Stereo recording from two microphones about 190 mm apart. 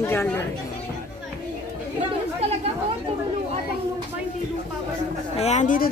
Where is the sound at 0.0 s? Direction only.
10° left (ahead or behind).